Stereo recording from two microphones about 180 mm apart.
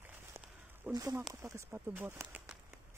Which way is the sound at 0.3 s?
15° right (ahead or behind).